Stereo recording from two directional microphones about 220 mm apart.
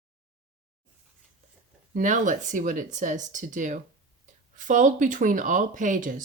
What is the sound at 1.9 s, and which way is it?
Speech, 35° right (ahead or behind).